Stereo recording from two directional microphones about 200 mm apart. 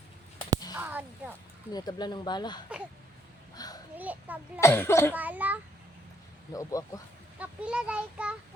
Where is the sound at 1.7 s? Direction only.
20° left (ahead or behind).